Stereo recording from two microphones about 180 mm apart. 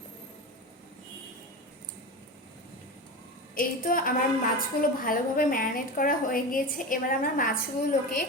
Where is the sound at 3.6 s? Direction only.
50° left (ahead or behind).